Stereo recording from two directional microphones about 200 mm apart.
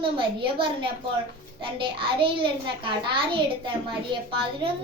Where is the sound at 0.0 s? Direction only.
25° right (ahead or behind).